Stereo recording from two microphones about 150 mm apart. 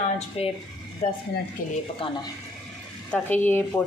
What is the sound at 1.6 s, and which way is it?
Speech, 70° left (ahead or behind).